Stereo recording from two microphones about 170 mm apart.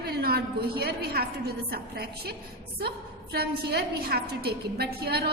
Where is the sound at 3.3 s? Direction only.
65° right (ahead or behind).